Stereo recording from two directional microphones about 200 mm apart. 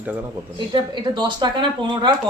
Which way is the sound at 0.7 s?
25° right (ahead or behind).